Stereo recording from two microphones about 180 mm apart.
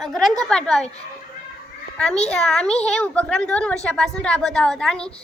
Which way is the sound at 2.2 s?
5° left (ahead or behind).